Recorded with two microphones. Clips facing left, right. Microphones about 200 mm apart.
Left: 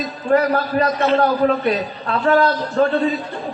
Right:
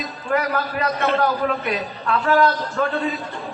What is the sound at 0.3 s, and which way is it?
A man's voice, 35° left (ahead or behind).